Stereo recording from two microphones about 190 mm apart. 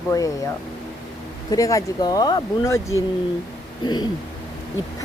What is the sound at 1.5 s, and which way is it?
Speech, 15° left (ahead or behind).